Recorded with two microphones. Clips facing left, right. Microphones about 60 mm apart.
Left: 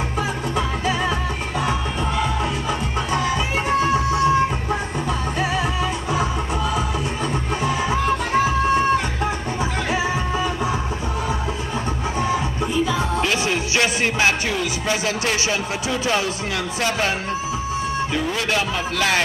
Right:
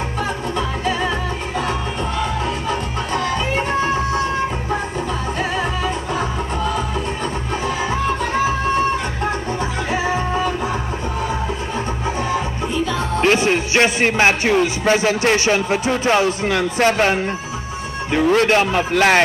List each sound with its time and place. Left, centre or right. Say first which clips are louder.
0.6 s music: right 1 dB; centre
3.1 s music: right 2 dB; centre
6.1 s music: even; centre
10.1 s music: right 3 dB; centre
12.8 s music: even; centre
13.2 s a man's voice: right 5 dB; right